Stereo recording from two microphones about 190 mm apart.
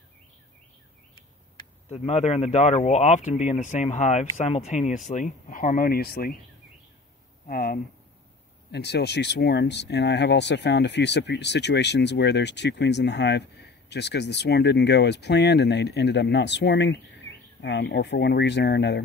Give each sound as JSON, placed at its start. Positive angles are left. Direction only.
{"t": 1.9, "sound": "speech", "side_deg": 35}
{"t": 7.4, "sound": "speech", "side_deg": 50}
{"t": 8.7, "sound": "speech", "side_deg": 60}